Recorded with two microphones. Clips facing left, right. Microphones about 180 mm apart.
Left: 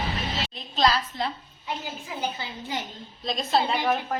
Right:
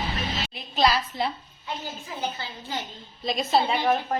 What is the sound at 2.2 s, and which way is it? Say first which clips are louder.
Speech: even; 15° left (ahead or behind).